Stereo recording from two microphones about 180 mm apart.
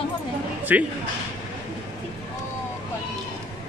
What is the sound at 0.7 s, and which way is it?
Speech, 10° right (ahead or behind).